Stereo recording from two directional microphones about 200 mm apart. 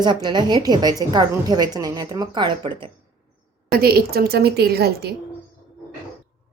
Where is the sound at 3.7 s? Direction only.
50° right (ahead or behind).